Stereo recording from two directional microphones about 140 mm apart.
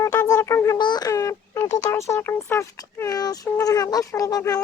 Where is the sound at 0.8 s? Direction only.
30° left (ahead or behind).